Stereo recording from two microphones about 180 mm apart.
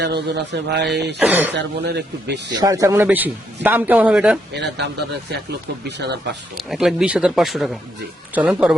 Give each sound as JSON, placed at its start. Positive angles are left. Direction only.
{"t": 0.0, "sound": "a man's voice", "side_deg": -70}
{"t": 1.2, "sound": "a man's voice", "side_deg": -10}
{"t": 1.5, "sound": "a man's voice", "side_deg": -70}
{"t": 2.5, "sound": "a man's voice", "side_deg": -20}
{"t": 4.5, "sound": "a man's voice", "side_deg": -70}
{"t": 6.6, "sound": "speech", "side_deg": 0}